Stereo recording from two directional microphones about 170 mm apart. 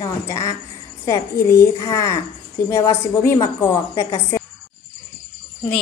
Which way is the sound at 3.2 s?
20° left (ahead or behind).